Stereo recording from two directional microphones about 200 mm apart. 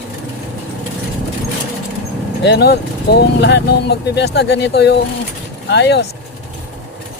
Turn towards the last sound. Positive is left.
turn(degrees=60)  # may be behind; listen again after turning